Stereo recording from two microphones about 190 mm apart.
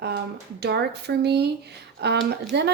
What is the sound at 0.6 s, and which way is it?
Speech, 60° right (ahead or behind).